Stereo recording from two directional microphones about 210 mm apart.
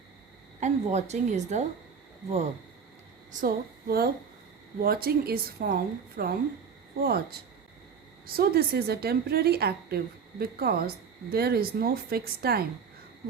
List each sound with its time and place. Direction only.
0.6 s a woman's voice: 35° right (ahead or behind)
3.4 s a woman's voice: 45° right (ahead or behind)
8.4 s a woman's voice: 50° right (ahead or behind)